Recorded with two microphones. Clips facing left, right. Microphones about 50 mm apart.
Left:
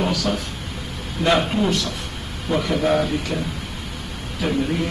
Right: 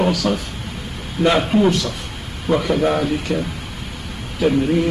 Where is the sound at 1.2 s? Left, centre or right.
Centre.